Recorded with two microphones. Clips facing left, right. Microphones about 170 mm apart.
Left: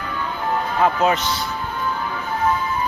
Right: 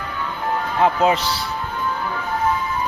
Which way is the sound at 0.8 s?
30° right (ahead or behind).